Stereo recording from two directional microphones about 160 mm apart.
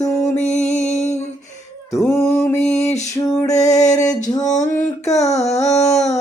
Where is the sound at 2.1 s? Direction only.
20° left (ahead or behind).